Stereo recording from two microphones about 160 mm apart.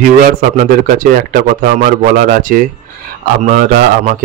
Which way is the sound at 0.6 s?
60° right (ahead or behind).